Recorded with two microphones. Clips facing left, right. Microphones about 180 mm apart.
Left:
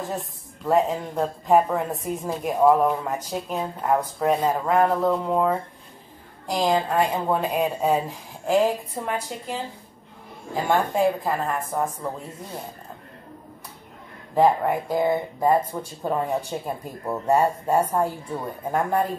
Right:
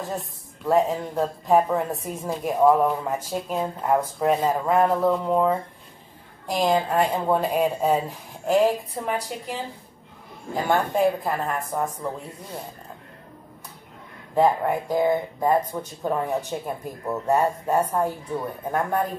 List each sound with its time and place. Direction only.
0.0 s speech: centre (ahead or behind)
10.7 s speech: centre (ahead or behind)
14.9 s speech: 10° left (ahead or behind)